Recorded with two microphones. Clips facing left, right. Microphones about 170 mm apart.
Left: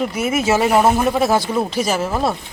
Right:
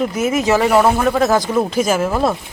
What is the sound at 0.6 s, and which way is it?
Speech, 15° left (ahead or behind).